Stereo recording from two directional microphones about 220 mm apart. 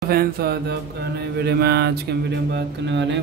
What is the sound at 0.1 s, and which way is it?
Speech, 45° right (ahead or behind).